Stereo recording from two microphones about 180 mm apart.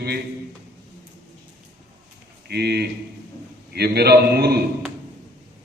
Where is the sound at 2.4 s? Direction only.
65° right (ahead or behind).